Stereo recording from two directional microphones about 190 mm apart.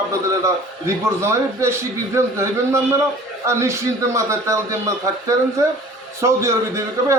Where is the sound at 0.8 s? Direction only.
15° right (ahead or behind).